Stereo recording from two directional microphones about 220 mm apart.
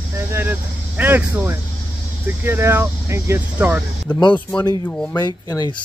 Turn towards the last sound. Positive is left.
turn(degrees=15)  # may be behind; listen again after turning